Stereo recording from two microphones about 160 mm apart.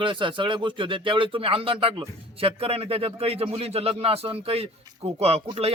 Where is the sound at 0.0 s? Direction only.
30° right (ahead or behind).